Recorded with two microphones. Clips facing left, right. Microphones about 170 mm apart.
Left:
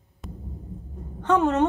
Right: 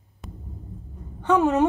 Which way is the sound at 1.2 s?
5° right (ahead or behind).